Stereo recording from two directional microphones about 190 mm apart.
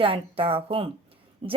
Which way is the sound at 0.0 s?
30° right (ahead or behind).